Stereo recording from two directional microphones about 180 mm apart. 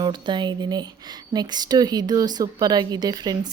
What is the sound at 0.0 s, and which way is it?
A woman's voice, 25° right (ahead or behind).